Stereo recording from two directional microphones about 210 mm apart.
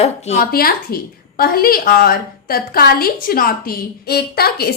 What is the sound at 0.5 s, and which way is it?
A woman's voice, 45° left (ahead or behind).